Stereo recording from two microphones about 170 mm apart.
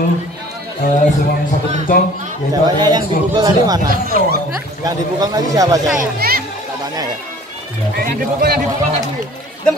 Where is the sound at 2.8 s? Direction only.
25° right (ahead or behind).